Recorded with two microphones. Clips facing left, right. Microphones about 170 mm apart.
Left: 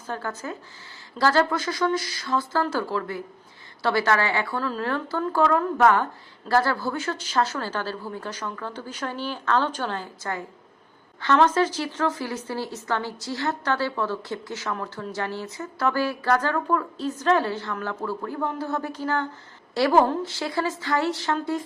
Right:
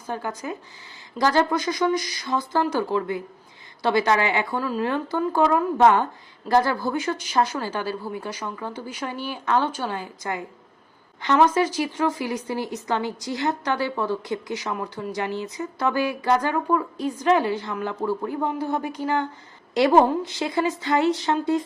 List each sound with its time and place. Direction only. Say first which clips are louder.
0.1 s a woman's voice: right 2 dB; 15° right (ahead or behind)